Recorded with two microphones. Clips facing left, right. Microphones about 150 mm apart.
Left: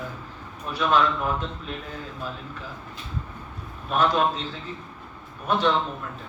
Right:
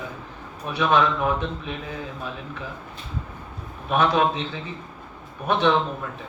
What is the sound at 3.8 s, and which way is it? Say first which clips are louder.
Speech: right 2 dB; 70° right (ahead or behind).